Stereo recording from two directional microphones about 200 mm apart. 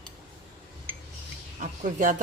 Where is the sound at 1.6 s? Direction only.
40° right (ahead or behind).